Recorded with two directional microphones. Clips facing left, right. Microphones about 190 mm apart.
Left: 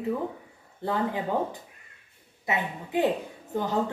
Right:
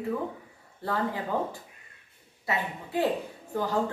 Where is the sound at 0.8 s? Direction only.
20° left (ahead or behind).